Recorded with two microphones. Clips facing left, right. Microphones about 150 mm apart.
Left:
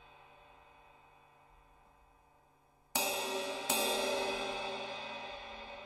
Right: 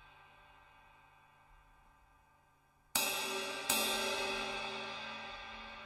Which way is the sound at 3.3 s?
50° left (ahead or behind).